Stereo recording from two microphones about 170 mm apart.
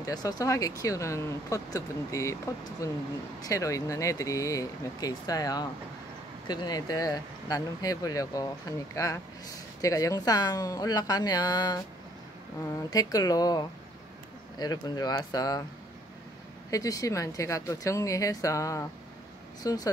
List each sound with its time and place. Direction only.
0.0 s speech: 20° left (ahead or behind)
12.9 s speech: 20° left (ahead or behind)
16.7 s speech: 20° left (ahead or behind)